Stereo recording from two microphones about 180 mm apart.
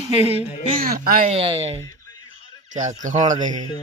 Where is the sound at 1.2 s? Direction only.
30° right (ahead or behind).